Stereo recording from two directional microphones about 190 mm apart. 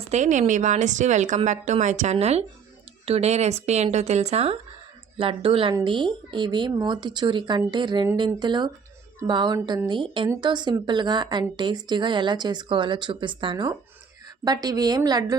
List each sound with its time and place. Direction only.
0.1 s a woman's voice: 40° right (ahead or behind); by 15.4 s 20° right (ahead or behind)